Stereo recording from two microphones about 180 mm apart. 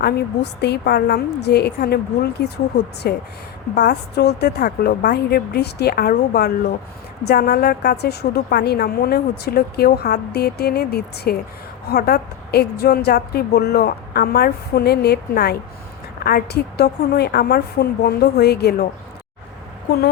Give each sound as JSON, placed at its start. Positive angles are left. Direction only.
{"t": 0.0, "sound": "a woman's voice", "side_deg": 70}
{"t": 3.0, "sound": "a woman's voice", "side_deg": 60}